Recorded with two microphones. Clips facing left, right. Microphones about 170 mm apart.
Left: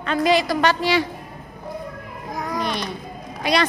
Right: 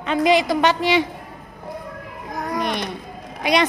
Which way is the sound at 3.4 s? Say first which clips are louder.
Right 2 dB; 20° right (ahead or behind).